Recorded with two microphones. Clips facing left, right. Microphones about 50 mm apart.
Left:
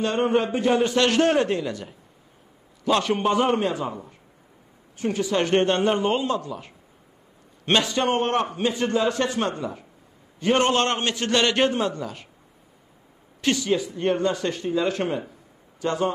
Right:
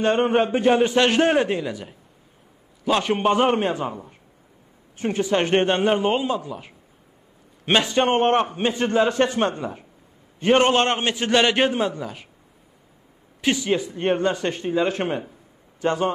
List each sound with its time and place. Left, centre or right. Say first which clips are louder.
0.0 s a man's voice: right 3 dB; right; by 3.3 s centre
3.3 s a man's voice: right 3 dB; right; by 6.7 s centre
7.8 s a man's voice: right 4 dB; right; by 12.3 s centre
13.4 s speech: right 1 dB; centre
13.7 s a man's voice: right 1 dB; right